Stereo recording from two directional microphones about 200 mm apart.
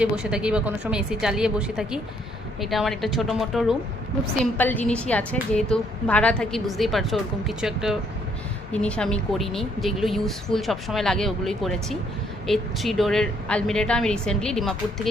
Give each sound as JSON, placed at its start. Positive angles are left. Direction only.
{"t": 0.0, "sound": "a woman's voice", "side_deg": -5}
{"t": 4.5, "sound": "a woman's voice", "side_deg": 10}